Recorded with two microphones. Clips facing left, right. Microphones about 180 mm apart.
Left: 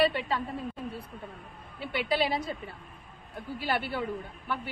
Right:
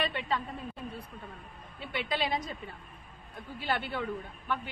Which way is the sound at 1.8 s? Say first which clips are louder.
Left 5 dB; 35° left (ahead or behind).